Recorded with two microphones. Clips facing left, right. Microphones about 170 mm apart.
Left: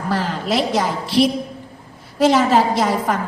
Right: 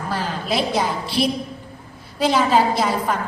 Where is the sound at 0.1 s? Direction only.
75° left (ahead or behind).